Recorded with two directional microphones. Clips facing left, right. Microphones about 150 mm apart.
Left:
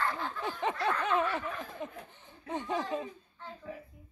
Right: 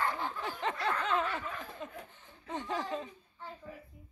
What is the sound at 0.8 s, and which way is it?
Speech, 15° left (ahead or behind).